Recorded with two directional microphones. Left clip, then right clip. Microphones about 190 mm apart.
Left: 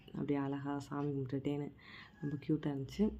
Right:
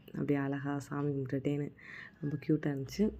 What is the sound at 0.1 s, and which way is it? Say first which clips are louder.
Speech: right 4 dB; 15° right (ahead or behind).